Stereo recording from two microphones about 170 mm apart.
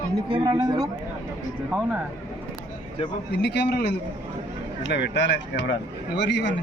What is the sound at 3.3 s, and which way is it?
Speech, 85° left.